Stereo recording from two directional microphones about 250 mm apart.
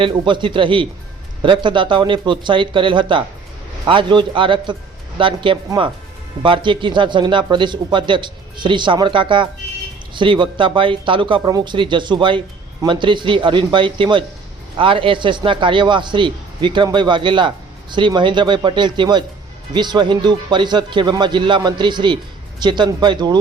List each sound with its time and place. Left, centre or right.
0.0 s speech: centre